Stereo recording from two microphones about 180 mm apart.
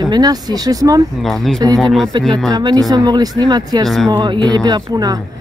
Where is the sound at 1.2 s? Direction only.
Centre (ahead or behind).